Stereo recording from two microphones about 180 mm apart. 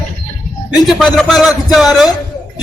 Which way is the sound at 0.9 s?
Centre (ahead or behind).